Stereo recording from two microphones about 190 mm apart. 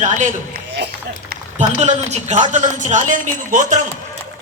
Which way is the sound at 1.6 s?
40° right (ahead or behind).